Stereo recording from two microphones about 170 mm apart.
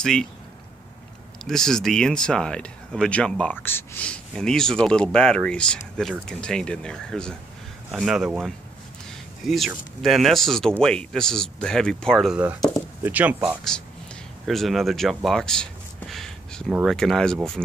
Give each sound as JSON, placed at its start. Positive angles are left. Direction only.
{"t": 0.0, "sound": "speech", "side_deg": 5}
{"t": 1.4, "sound": "speech", "side_deg": 5}